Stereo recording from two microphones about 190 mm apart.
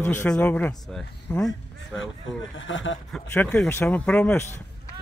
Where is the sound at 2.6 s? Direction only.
85° left.